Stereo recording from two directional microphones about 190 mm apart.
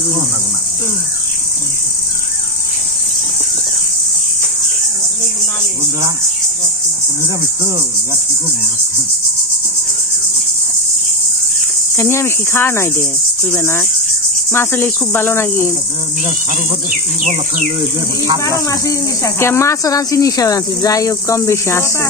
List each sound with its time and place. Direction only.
12.0 s speech: 15° left (ahead or behind)
17.2 s insect: 40° right (ahead or behind)
18.7 s speech: 15° left (ahead or behind)